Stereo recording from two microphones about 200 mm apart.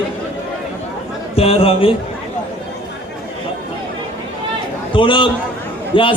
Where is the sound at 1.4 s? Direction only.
30° left (ahead or behind).